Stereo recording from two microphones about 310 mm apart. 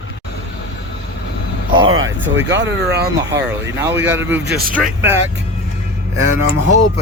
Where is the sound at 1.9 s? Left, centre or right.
Right.